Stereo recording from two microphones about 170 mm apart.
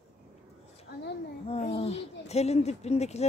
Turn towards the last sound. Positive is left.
turn(degrees=40)  # may be behind; listen again after turning